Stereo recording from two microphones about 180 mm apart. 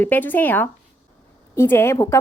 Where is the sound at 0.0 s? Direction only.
10° left (ahead or behind).